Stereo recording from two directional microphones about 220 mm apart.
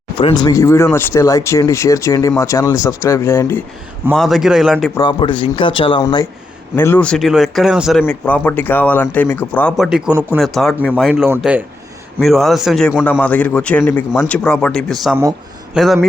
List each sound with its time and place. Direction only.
0.2 s speech: 20° left (ahead or behind)
4.1 s a man's voice: centre (ahead or behind)
4.9 s speech: 20° left (ahead or behind)
6.7 s a man's voice: 10° left (ahead or behind)
15.1 s speech: 10° right (ahead or behind)
15.8 s a man's voice: centre (ahead or behind)